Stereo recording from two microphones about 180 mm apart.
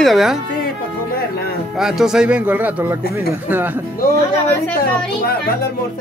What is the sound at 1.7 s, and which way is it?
Speech, 5° right (ahead or behind).